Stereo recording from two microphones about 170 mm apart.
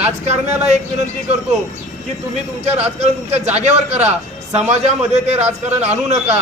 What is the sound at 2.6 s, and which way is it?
Speech, 40° right (ahead or behind).